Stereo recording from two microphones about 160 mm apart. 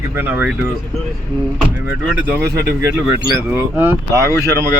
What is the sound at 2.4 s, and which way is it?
Speech, 90° right.